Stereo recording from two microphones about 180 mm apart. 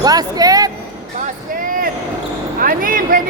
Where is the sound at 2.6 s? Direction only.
50° right (ahead or behind).